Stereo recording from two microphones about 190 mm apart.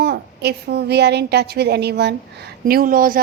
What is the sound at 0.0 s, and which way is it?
A woman's voice, 55° right (ahead or behind).